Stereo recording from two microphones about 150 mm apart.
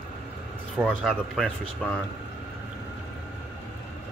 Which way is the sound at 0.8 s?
5° left (ahead or behind).